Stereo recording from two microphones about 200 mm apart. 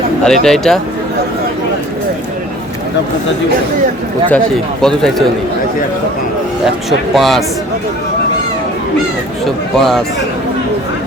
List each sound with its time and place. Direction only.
0.3 s speech: centre (ahead or behind)
4.3 s speech: centre (ahead or behind)
7.1 s speech: centre (ahead or behind)
9.7 s speech: centre (ahead or behind)